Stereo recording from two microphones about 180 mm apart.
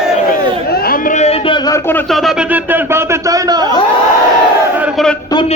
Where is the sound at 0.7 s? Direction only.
55° left (ahead or behind); by 2.0 s 15° left (ahead or behind).